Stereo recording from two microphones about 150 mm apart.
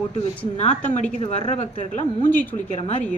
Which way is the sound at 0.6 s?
50° left (ahead or behind).